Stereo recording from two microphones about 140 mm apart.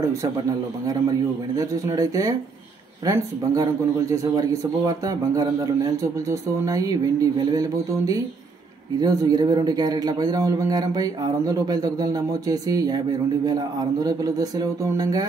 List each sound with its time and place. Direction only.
1.6 s a man's voice: 25° right (ahead or behind)